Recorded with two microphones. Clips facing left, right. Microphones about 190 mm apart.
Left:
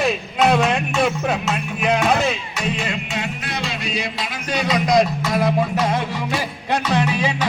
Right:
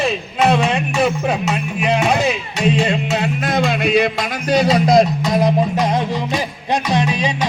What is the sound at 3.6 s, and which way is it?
Music, 55° right (ahead or behind).